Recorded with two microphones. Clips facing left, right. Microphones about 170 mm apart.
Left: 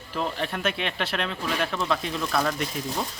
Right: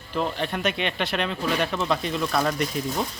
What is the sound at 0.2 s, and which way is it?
A man's voice, centre (ahead or behind).